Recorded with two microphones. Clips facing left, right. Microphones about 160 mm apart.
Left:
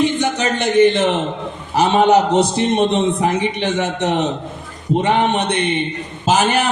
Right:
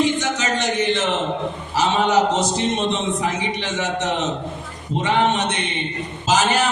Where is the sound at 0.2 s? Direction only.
55° left (ahead or behind).